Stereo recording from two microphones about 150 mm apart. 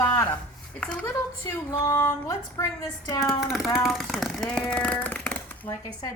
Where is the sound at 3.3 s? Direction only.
Centre (ahead or behind).